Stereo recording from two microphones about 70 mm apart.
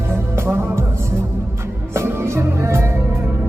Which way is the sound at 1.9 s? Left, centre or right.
Right.